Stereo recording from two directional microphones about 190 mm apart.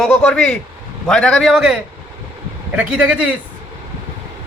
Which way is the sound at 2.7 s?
5° right (ahead or behind).